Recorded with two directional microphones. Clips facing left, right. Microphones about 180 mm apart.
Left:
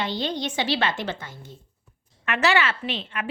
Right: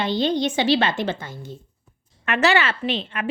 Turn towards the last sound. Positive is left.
turn(degrees=-30)  # may be behind; listen again after turning